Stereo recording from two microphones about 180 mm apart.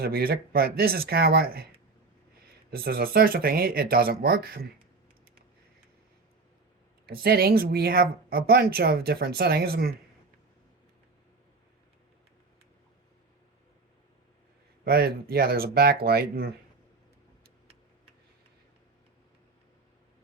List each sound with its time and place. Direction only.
0.0 s speech: 55° right (ahead or behind)
2.6 s speech: 55° right (ahead or behind)
7.0 s speech: 55° right (ahead or behind)
14.8 s speech: 60° right (ahead or behind)